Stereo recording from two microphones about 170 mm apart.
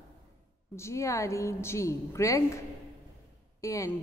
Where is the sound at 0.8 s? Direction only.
15° left (ahead or behind).